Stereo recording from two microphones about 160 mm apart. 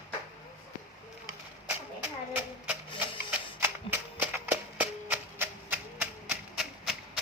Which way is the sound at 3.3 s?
10° right (ahead or behind).